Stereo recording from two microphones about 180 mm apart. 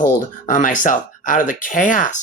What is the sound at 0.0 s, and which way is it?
Speech, 45° left (ahead or behind).